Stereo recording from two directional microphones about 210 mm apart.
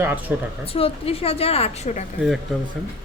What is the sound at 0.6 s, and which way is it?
A woman's voice, 25° left (ahead or behind).